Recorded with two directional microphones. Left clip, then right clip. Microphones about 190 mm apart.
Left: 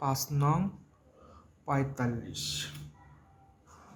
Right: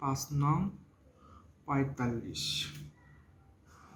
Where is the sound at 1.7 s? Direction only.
45° left (ahead or behind).